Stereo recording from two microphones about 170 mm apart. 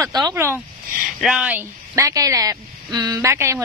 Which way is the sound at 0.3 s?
15° right (ahead or behind).